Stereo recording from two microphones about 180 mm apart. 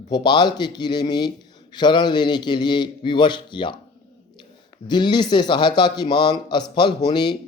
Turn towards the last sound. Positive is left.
turn(degrees=25)  # may be behind; listen again after turning